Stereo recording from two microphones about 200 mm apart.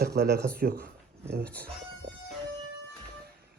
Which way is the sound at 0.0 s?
55° right (ahead or behind).